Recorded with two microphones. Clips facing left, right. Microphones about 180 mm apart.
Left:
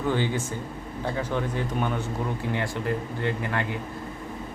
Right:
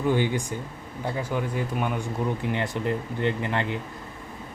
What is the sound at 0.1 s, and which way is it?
Speech, 15° right (ahead or behind).